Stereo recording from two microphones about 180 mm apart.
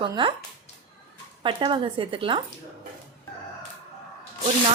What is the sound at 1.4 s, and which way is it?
Speech, 25° right (ahead or behind).